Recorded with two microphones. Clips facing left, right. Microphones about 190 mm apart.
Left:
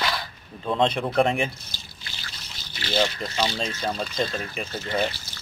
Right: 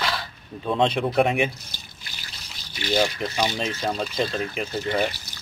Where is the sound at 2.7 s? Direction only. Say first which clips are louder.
Right 2 dB; 10° right (ahead or behind).